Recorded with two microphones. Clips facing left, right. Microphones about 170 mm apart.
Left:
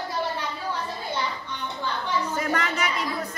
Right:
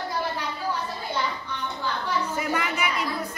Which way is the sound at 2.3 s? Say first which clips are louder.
Left 1 dB; 10° right (ahead or behind).